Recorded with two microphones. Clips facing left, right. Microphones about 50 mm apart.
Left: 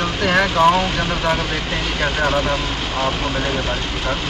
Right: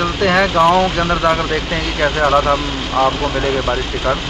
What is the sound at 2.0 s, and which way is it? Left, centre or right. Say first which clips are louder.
Speech: right 5 dB; right.